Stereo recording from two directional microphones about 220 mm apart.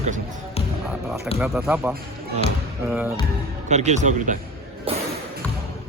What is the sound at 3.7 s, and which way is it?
Speech, 30° right (ahead or behind).